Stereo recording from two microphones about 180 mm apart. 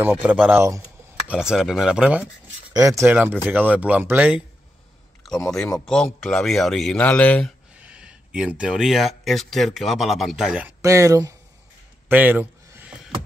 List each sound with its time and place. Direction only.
0.1 s speech: 10° right (ahead or behind)
2.7 s speech: 20° right (ahead or behind)
5.5 s a man's voice: 5° left (ahead or behind)
7.8 s speech: 5° right (ahead or behind)
10.8 s speech: 15° right (ahead or behind)
12.1 s a sound: 10° right (ahead or behind)